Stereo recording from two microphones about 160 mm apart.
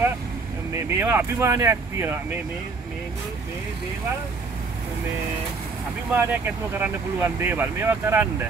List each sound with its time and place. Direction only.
0.7 s speech: 15° right (ahead or behind)
6.1 s speech: 10° right (ahead or behind)